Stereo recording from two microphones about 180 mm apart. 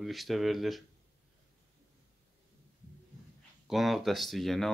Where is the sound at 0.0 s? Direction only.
Centre (ahead or behind).